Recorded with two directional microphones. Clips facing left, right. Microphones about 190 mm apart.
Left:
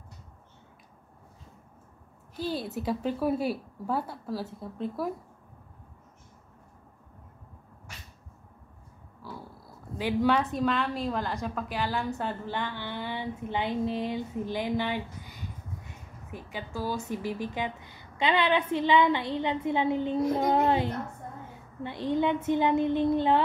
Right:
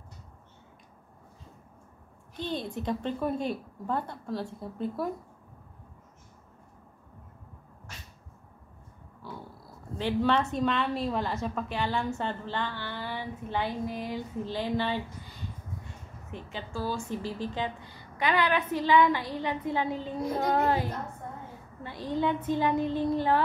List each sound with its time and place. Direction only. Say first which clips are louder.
2.3 s a woman's voice: left 1 dB; 5° left (ahead or behind)
9.2 s a sound: even; centre (ahead or behind)
9.9 s a woman's voice: left 1 dB; 10° left (ahead or behind)